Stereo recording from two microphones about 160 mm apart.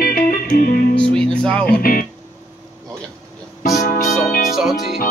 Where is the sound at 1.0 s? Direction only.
5° left (ahead or behind).